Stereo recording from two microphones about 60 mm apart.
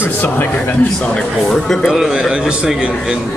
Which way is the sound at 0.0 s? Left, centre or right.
Left.